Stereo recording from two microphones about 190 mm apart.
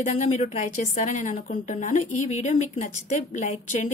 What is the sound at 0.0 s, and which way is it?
A woman's voice, 40° left (ahead or behind).